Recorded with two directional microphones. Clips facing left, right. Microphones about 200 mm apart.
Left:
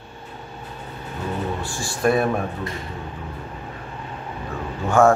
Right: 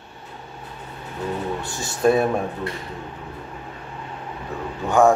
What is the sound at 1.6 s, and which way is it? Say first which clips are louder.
Speech: right 2 dB; 20° right (ahead or behind).